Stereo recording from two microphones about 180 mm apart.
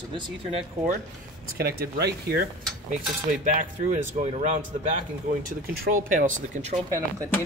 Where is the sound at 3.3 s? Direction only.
50° right (ahead or behind).